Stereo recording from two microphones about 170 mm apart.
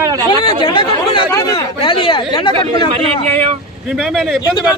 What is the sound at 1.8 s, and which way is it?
Speech, 30° left (ahead or behind).